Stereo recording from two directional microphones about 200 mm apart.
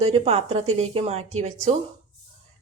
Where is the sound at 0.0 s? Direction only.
30° right (ahead or behind).